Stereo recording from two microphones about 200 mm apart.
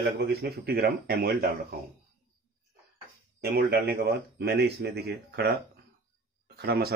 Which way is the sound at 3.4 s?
50° right (ahead or behind).